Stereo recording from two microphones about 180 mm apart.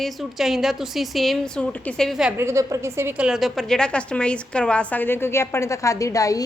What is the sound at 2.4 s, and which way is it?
A woman's voice, 15° right (ahead or behind).